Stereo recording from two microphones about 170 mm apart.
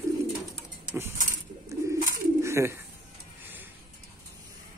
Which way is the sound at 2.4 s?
15° right (ahead or behind).